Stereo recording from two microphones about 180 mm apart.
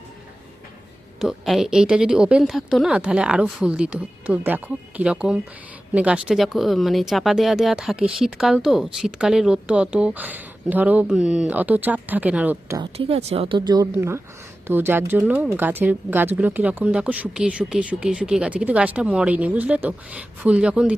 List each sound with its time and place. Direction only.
1.2 s speech: centre (ahead or behind)
12.8 s a woman's voice: 30° right (ahead or behind); by 20.9 s 5° right (ahead or behind)